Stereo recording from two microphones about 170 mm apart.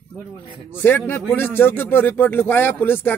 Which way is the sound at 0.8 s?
10° left (ahead or behind).